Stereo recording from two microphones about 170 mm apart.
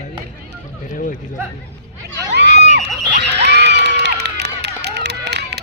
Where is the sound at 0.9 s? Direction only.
50° left (ahead or behind).